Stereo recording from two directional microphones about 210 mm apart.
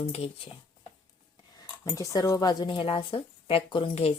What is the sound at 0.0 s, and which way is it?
Speech, 30° left (ahead or behind).